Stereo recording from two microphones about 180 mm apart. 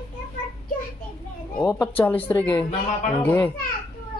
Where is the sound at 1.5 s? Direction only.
10° left (ahead or behind).